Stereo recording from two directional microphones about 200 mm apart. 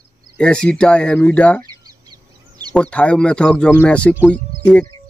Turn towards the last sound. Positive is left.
turn(degrees=5)  # may be behind; listen again after turning